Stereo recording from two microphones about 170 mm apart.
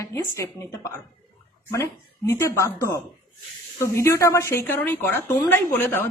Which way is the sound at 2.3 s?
15° left (ahead or behind).